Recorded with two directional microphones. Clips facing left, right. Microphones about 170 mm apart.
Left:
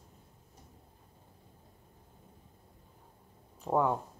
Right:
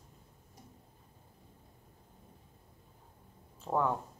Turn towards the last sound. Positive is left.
turn(degrees=15)  # may be behind; listen again after turning